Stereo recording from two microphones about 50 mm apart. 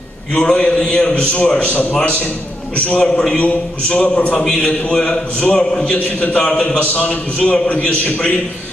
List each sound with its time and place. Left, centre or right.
0.3 s a man's voice: left
6.8 s a man's voice: left